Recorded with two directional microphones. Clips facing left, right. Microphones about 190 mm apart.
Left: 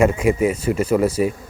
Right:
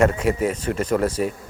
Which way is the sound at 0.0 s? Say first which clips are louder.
Left 3 dB; 10° left (ahead or behind).